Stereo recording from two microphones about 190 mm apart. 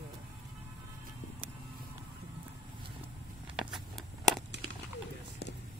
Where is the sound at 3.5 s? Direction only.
Centre (ahead or behind).